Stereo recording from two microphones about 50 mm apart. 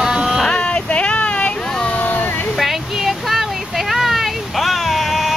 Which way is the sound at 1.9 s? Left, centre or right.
Left.